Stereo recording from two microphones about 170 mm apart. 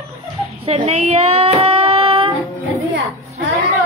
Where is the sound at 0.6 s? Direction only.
35° right (ahead or behind).